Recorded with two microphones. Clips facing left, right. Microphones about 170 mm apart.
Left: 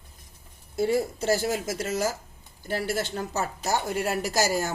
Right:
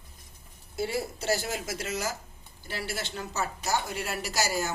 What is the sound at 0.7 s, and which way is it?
Speech, 45° left (ahead or behind).